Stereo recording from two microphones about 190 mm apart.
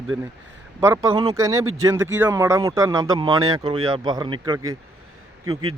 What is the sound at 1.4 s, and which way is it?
Speech, 15° right (ahead or behind).